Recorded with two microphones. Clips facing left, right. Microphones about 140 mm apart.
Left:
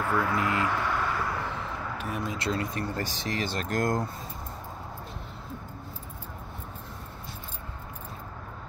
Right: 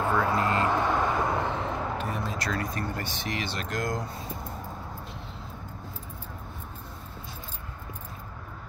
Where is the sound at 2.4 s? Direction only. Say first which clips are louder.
Left 1 dB; 25° left (ahead or behind); by 4.0 s 50° left (ahead or behind).